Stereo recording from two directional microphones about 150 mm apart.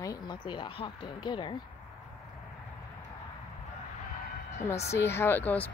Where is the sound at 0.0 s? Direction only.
25° left (ahead or behind).